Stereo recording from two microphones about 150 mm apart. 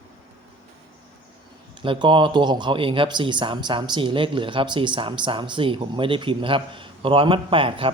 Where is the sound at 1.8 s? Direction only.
35° right (ahead or behind).